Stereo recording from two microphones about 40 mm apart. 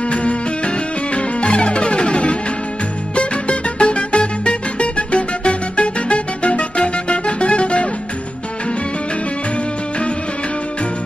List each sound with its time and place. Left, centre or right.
0.1 s music: left